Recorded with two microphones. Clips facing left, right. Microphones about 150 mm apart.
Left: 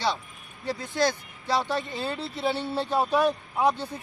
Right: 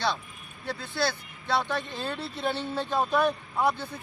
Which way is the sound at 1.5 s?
10° left (ahead or behind).